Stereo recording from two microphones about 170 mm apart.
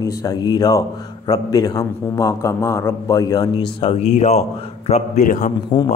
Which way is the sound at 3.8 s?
35° left (ahead or behind).